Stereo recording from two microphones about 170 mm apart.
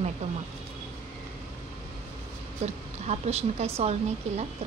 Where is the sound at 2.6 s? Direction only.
40° right (ahead or behind).